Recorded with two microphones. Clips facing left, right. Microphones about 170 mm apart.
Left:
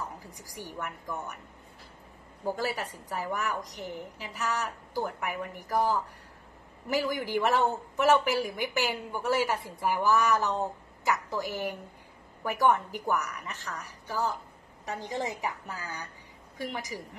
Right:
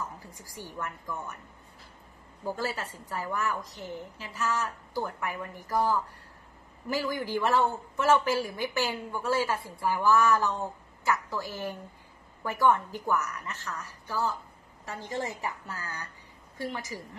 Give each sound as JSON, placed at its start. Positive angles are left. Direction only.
{"t": 0.3, "sound": "speech", "side_deg": 15}
{"t": 2.4, "sound": "speech", "side_deg": 15}